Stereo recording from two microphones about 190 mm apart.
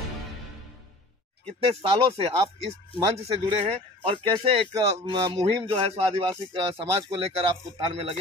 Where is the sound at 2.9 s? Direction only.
35° right (ahead or behind).